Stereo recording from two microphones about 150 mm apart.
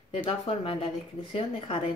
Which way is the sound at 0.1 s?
35° left (ahead or behind).